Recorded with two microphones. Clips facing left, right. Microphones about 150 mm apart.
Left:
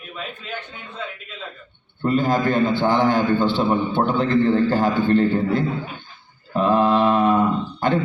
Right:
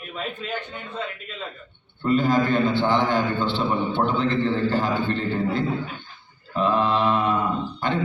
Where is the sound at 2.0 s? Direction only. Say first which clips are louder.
Left 1 dB; 40° left (ahead or behind).